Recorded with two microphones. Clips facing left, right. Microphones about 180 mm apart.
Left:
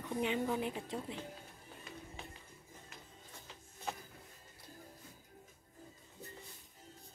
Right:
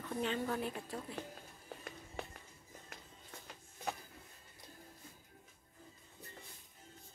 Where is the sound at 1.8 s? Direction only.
55° right (ahead or behind).